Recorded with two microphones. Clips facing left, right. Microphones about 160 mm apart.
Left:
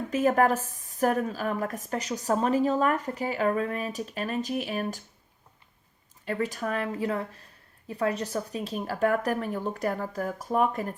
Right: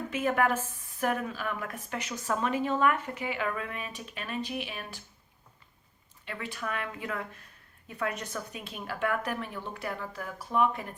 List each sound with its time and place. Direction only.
0.1 s a woman's voice: 40° left (ahead or behind)
6.2 s a woman's voice: 40° left (ahead or behind)